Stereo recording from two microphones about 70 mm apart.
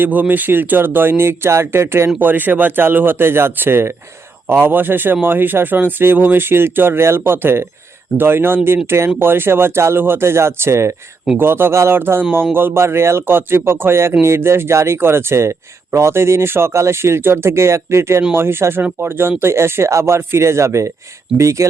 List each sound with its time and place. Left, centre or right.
0.0 s speech: right